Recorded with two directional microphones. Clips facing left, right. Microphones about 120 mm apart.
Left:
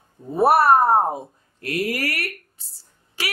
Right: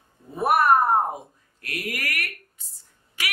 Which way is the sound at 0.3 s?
35° left (ahead or behind).